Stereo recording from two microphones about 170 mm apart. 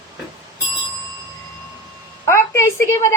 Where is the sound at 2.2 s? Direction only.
15° left (ahead or behind).